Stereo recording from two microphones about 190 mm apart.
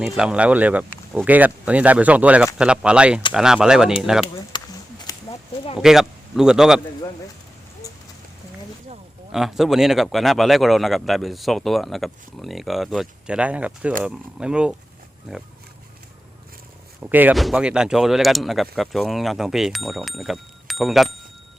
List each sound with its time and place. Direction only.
0.0 s speech: 5° right (ahead or behind)
4.5 s a sound: 20° left (ahead or behind)
5.8 s speech: centre (ahead or behind)
9.3 s speech: centre (ahead or behind)
17.0 s speech: 10° right (ahead or behind)